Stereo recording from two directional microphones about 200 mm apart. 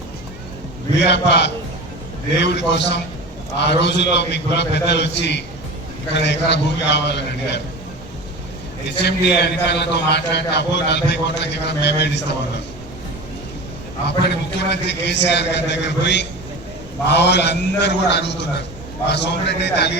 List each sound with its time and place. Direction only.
1.0 s a man's voice: 60° left (ahead or behind)
9.0 s a man's voice: 55° left (ahead or behind)
14.3 s a man's voice: 60° left (ahead or behind)